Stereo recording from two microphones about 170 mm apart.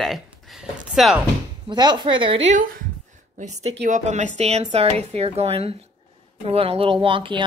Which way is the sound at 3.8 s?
45° right (ahead or behind).